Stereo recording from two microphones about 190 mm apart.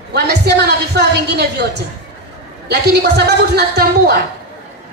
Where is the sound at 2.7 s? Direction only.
60° right (ahead or behind).